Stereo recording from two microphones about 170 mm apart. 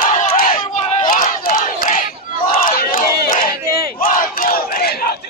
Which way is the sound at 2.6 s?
60° left (ahead or behind).